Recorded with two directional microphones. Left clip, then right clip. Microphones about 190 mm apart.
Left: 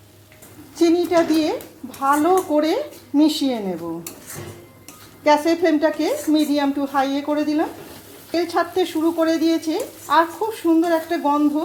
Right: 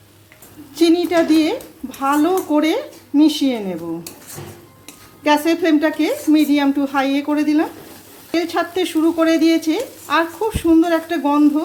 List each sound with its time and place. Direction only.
0.8 s speech: 25° right (ahead or behind)
5.2 s speech: 15° right (ahead or behind)